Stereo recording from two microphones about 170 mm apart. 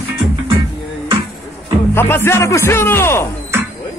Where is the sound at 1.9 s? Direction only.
15° left (ahead or behind).